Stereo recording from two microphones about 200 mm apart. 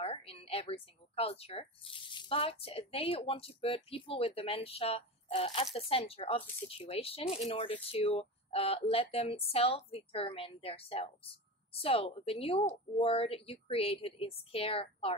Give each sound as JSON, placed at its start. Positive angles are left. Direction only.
{"t": 0.0, "sound": "a woman's voice", "side_deg": 30}